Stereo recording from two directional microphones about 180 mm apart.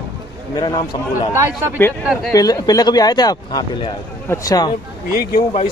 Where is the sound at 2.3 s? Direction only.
20° left (ahead or behind).